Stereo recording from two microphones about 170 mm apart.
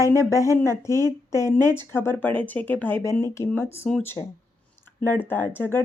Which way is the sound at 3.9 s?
5° left (ahead or behind).